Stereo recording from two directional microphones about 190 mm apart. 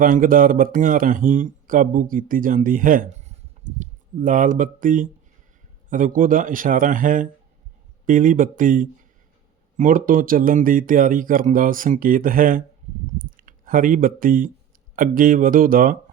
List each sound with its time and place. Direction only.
0.0 s speech: 45° right (ahead or behind)